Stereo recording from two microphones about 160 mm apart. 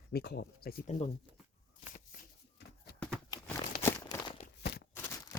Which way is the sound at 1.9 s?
55° left (ahead or behind).